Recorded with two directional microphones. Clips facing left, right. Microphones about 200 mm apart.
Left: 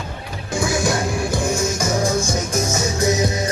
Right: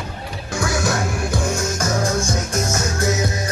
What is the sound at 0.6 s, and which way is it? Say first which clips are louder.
Music: left 1 dB; 15° left (ahead or behind).